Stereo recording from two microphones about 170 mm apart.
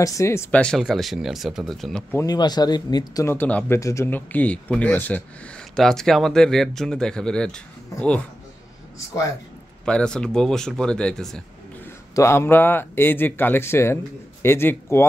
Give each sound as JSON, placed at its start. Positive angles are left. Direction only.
{"t": 0.0, "sound": "speech", "side_deg": 15}
{"t": 2.1, "sound": "speech", "side_deg": 25}
{"t": 3.3, "sound": "speech", "side_deg": 10}
{"t": 9.8, "sound": "speech", "side_deg": 5}
{"t": 12.2, "sound": "speech", "side_deg": 15}